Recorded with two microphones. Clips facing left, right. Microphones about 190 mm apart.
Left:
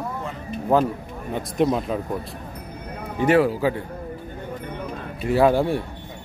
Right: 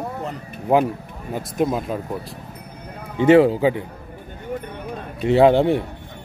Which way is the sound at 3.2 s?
25° right (ahead or behind).